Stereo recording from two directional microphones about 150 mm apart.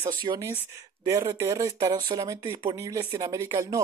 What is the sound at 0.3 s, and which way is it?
Speech, 30° right (ahead or behind).